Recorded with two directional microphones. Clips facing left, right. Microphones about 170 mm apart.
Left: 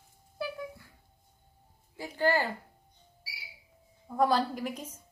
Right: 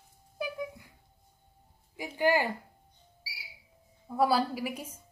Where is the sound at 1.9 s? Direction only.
15° right (ahead or behind).